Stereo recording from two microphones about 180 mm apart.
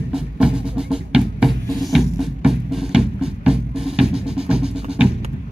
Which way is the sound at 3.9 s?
5° right (ahead or behind).